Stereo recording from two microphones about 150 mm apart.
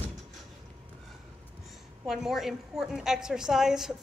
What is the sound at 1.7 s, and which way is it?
A woman's voice, centre (ahead or behind).